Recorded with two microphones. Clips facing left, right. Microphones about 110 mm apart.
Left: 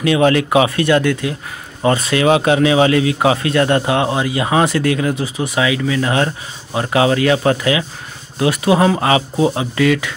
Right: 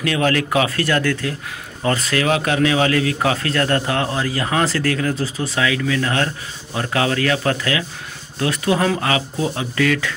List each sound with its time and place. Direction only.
0.0 s speech: 20° left (ahead or behind)